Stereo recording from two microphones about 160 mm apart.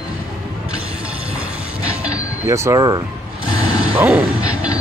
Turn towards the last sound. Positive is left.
turn(degrees=-5)  # may be behind; listen again after turning